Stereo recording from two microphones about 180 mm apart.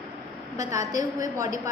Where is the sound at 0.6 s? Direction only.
15° right (ahead or behind).